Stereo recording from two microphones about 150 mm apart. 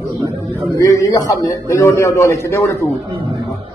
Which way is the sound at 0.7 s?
20° left (ahead or behind).